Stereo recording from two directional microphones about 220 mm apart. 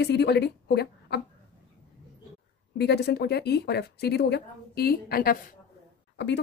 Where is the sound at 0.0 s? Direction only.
50° left (ahead or behind).